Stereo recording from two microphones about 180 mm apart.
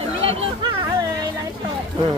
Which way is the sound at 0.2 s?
30° right (ahead or behind).